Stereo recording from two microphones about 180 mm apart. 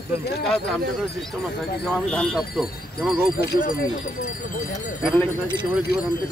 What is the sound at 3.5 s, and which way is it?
Speech, 50° left (ahead or behind).